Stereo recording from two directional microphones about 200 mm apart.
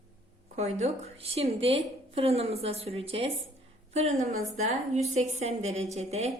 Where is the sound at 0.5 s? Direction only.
30° right (ahead or behind).